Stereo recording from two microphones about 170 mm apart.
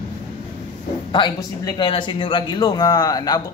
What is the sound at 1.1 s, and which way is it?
Speech, 25° left (ahead or behind).